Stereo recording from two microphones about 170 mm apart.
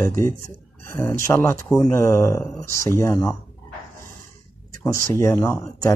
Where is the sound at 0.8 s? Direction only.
15° left (ahead or behind).